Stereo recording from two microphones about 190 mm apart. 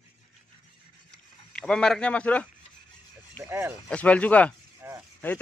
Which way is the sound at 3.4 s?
10° right (ahead or behind).